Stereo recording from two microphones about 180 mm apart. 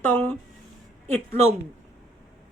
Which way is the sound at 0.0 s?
10° left (ahead or behind).